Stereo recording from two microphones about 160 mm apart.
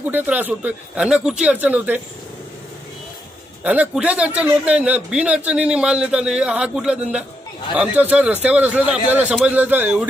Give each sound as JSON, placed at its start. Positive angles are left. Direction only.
{"t": 0.0, "sound": "a man's voice", "side_deg": -10}
{"t": 3.6, "sound": "a man's voice", "side_deg": -10}